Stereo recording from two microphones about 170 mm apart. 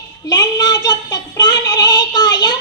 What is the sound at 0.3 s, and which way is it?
Female singing, 25° left (ahead or behind).